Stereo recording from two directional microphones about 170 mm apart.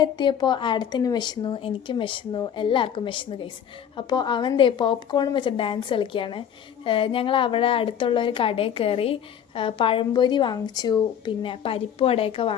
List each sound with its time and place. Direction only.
0.0 s a woman's voice: 25° left (ahead or behind)